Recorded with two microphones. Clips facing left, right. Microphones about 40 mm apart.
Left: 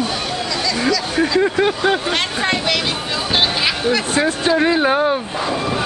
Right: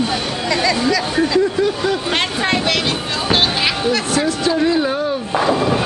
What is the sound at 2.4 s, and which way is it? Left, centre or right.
Speech, centre.